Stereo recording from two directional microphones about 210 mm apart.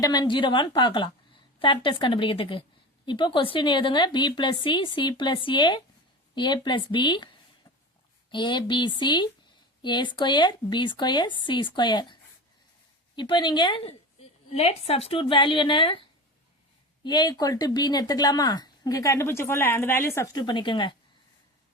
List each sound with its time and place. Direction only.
0.0 s speech: 20° left (ahead or behind)
8.3 s speech: 20° left (ahead or behind)
13.1 s speech: 20° left (ahead or behind)